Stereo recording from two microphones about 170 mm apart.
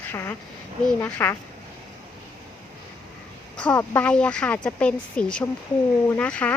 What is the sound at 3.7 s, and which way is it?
Speech, 15° left (ahead or behind).